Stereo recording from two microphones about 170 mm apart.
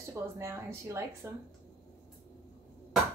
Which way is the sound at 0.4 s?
15° right (ahead or behind).